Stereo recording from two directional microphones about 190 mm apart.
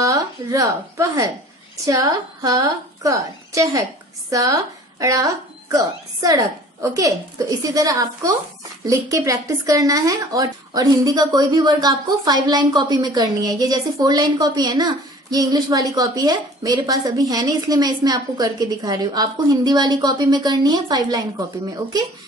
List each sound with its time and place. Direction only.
0.0 s a woman's voice: 15° right (ahead or behind)